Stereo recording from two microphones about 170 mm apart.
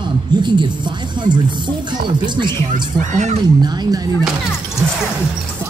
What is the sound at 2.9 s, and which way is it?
Speech, 45° right (ahead or behind).